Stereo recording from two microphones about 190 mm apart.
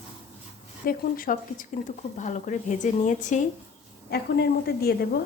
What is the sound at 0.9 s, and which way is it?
A woman's voice, 50° left (ahead or behind).